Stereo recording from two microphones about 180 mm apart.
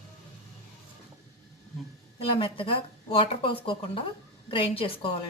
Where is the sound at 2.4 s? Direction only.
30° left (ahead or behind).